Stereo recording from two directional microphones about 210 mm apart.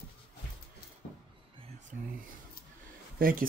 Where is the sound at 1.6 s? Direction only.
35° right (ahead or behind).